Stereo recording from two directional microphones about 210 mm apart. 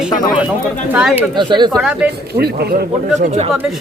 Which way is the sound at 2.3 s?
50° right (ahead or behind).